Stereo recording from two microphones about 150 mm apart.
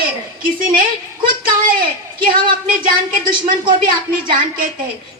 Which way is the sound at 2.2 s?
70° right (ahead or behind).